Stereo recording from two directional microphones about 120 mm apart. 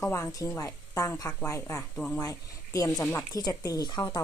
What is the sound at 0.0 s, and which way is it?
Speech, 25° left (ahead or behind).